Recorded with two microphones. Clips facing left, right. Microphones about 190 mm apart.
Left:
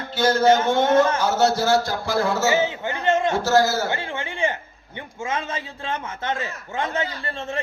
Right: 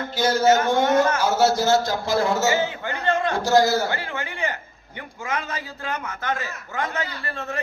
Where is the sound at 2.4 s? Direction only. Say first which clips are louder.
Left 1 dB; 20° left (ahead or behind).